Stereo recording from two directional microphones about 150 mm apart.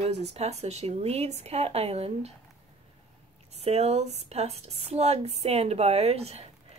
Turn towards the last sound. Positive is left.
turn(degrees=-45)  # may be behind; listen again after turning